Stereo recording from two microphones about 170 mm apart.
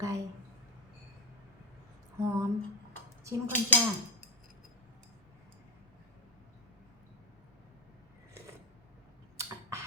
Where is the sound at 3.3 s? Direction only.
15° right (ahead or behind).